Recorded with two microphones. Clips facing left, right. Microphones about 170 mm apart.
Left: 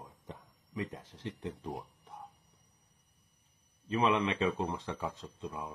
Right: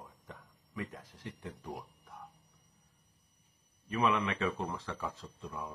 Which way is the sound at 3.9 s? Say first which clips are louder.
Left 2 dB; 20° left (ahead or behind).